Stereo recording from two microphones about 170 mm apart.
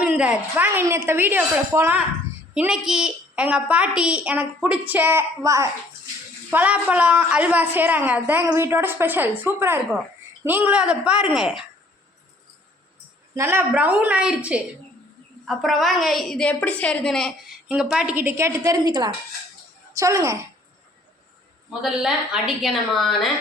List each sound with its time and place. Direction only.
0.0 s a woman's voice: 10° right (ahead or behind)
13.3 s a woman's voice: 15° right (ahead or behind)
21.7 s a woman's voice: 5° right (ahead or behind)